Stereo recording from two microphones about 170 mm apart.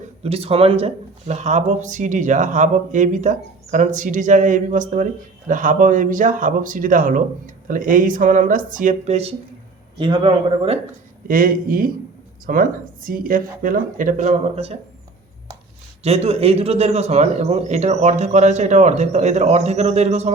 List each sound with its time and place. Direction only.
0.0 s speech: 35° right (ahead or behind)
10.0 s speech: 30° right (ahead or behind)
11.3 s speech: 55° right (ahead or behind); by 14.8 s 35° right (ahead or behind)
16.0 s a man's voice: 35° right (ahead or behind)